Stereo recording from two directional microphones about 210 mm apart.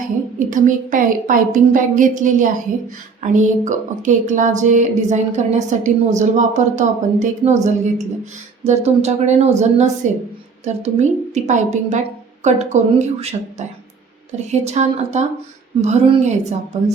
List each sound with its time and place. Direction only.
0.3 s a woman's voice: 40° right (ahead or behind)
14.3 s a woman's voice: 30° right (ahead or behind)